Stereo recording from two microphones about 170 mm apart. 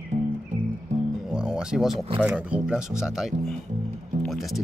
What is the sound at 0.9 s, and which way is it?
Music, 45° right (ahead or behind).